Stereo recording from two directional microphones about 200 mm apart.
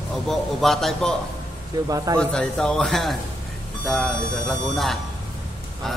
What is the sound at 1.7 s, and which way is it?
Speech, 15° right (ahead or behind).